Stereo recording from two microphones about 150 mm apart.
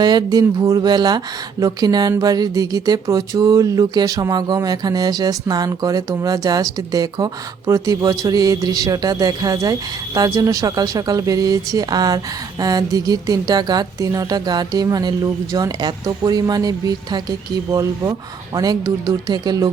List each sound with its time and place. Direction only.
0.0 s speech: 30° right (ahead or behind)